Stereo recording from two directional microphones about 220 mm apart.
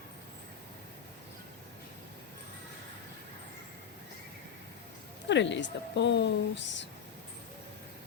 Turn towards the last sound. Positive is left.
turn(degrees=55)  # may be behind; listen again after turning